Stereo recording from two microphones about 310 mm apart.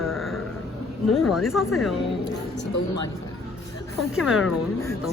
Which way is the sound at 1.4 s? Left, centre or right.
Centre.